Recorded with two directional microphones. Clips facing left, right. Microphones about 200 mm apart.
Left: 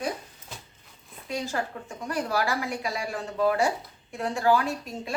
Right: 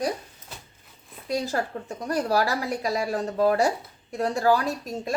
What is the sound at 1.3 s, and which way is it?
A woman's voice, 40° right (ahead or behind).